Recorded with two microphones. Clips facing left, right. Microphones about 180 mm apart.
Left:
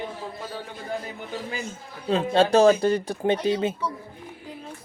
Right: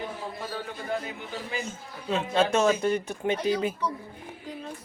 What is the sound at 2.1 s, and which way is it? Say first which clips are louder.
Speech: left 4 dB; 30° left (ahead or behind).